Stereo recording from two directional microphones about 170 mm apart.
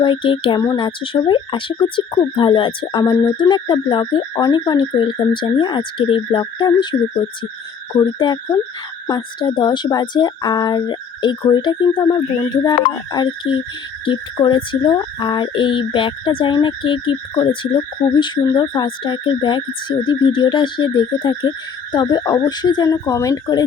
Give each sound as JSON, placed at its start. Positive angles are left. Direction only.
{"t": 0.0, "sound": "speech", "side_deg": 30}